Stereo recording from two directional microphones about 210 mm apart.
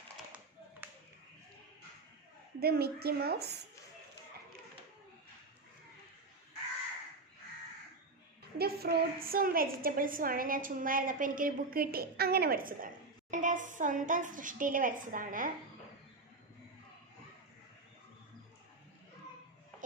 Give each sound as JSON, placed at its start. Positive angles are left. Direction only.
{"t": 0.8, "sound": "clapping", "side_deg": -10}
{"t": 2.6, "sound": "a woman's voice", "side_deg": -50}
{"t": 8.5, "sound": "a woman's voice", "side_deg": -50}